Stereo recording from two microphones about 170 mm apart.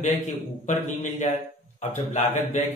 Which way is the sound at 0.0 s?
45° left (ahead or behind).